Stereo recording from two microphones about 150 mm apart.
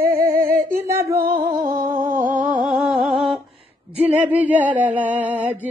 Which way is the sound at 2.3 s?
10° right (ahead or behind).